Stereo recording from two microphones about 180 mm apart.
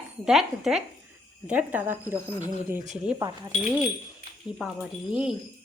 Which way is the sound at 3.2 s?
20° right (ahead or behind).